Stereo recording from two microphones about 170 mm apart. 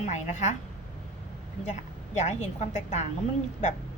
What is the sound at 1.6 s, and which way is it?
A woman's voice, 45° left (ahead or behind).